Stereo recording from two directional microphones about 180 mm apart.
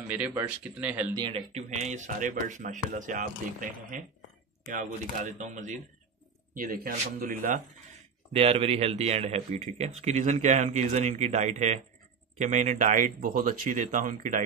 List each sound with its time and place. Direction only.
0.1 s speech: 10° right (ahead or behind)
1.1 s speech: 25° right (ahead or behind)
1.5 s speech: 40° right (ahead or behind)
8.3 s speech: 35° right (ahead or behind)